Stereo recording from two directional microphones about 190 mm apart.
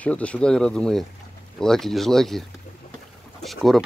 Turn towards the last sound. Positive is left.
turn(degrees=0)  # may be behind; listen again after turning